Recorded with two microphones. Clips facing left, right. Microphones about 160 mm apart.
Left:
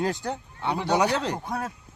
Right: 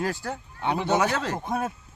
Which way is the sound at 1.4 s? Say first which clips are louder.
Right 3 dB; 20° right (ahead or behind).